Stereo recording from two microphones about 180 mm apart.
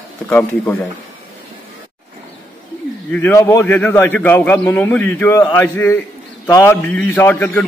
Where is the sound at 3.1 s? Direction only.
15° left (ahead or behind).